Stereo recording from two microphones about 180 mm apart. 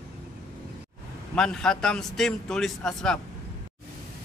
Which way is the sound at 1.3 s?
5° left (ahead or behind).